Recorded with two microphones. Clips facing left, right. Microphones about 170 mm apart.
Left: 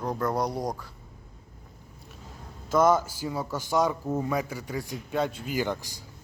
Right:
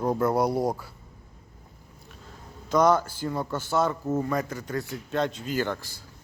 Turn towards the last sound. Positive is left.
turn(degrees=15)  # may be behind; listen again after turning